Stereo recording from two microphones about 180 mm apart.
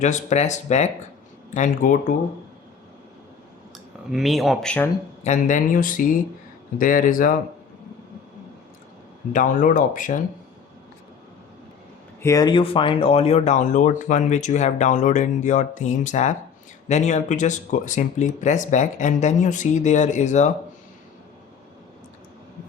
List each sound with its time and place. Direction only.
0.0 s speech: 40° left (ahead or behind)
4.1 s speech: centre (ahead or behind)
5.2 s speech: 45° left (ahead or behind)
9.3 s speech: 45° left (ahead or behind)
12.2 s speech: 20° left (ahead or behind); by 20.5 s 40° left (ahead or behind)